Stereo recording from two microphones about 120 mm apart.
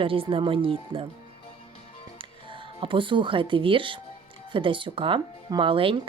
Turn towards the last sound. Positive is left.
turn(degrees=-50)  # may be behind; listen again after turning